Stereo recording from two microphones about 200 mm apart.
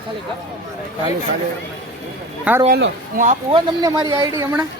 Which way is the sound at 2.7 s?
50° right (ahead or behind).